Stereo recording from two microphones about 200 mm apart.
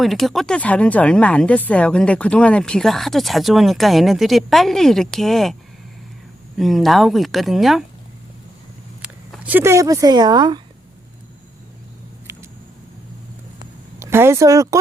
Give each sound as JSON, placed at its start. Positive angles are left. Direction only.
{"t": 0.0, "sound": "speech", "side_deg": 0}
{"t": 6.6, "sound": "speech", "side_deg": 0}
{"t": 9.3, "sound": "speech", "side_deg": -5}
{"t": 12.3, "sound": "a sound", "side_deg": -15}
{"t": 14.0, "sound": "speech", "side_deg": -10}